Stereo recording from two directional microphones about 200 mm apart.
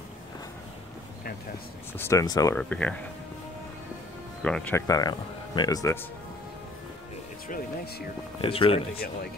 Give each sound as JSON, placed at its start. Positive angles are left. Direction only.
{"t": 2.0, "sound": "speech", "side_deg": 15}
{"t": 2.5, "sound": "speech", "side_deg": 5}
{"t": 4.4, "sound": "speech", "side_deg": 5}
{"t": 7.4, "sound": "speech", "side_deg": 45}
{"t": 8.4, "sound": "speech", "side_deg": 25}